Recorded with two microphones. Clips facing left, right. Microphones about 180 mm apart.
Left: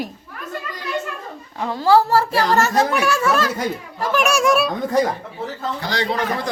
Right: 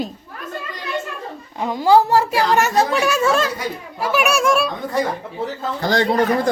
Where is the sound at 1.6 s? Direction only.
15° right (ahead or behind).